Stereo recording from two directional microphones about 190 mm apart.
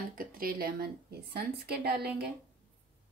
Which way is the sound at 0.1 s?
50° right (ahead or behind).